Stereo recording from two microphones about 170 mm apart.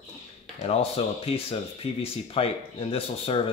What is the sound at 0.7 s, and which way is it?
Speech, 35° left (ahead or behind).